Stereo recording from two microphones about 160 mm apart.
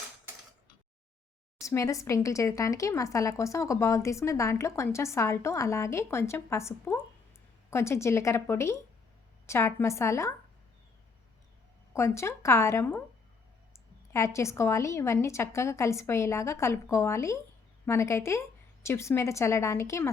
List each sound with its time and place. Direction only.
1.6 s speech: 20° left (ahead or behind)
11.9 s speech: 15° left (ahead or behind)